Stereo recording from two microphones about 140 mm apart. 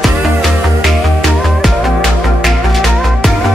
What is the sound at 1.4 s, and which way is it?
Music, centre (ahead or behind).